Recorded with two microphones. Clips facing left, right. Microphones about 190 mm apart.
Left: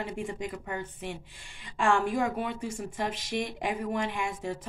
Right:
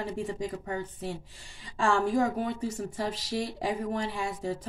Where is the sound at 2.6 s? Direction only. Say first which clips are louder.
Right 3 dB; 10° left (ahead or behind).